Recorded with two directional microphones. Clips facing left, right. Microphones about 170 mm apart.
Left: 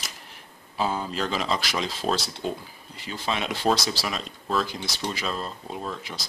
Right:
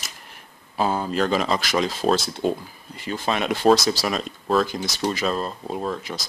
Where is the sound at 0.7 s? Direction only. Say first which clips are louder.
Right 5 dB; 50° right (ahead or behind).